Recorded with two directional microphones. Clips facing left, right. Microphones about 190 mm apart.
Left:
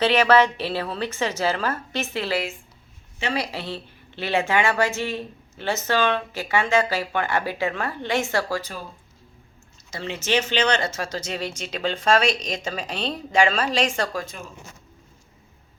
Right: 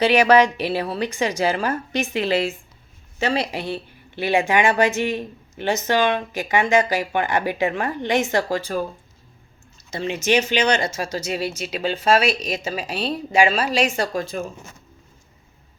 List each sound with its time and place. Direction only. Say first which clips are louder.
0.0 s speech: right 3 dB; 15° right (ahead or behind)
3.5 s speech: right 4 dB; 15° right (ahead or behind)
9.9 s speech: right 4 dB; 15° right (ahead or behind)